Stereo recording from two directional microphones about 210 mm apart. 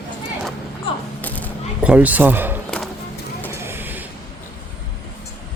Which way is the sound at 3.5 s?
10° right (ahead or behind).